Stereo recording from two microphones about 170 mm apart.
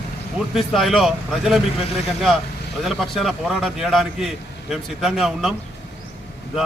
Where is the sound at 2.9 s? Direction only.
Centre (ahead or behind).